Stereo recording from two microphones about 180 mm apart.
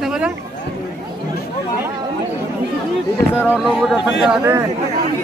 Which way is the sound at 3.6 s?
Centre (ahead or behind).